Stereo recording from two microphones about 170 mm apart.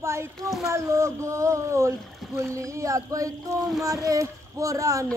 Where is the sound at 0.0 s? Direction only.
15° right (ahead or behind).